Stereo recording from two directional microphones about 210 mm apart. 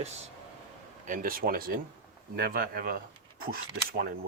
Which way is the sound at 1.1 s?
45° right (ahead or behind).